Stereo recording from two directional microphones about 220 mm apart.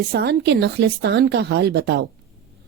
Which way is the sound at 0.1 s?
45° right (ahead or behind).